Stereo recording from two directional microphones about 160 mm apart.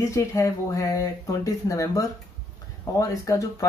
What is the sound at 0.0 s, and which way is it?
Speech, 20° left (ahead or behind).